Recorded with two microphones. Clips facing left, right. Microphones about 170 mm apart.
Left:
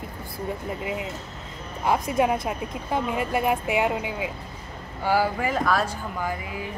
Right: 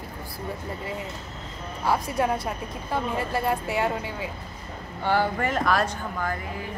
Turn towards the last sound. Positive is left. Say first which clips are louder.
# even
turn(degrees=10)  # may be behind; listen again after turning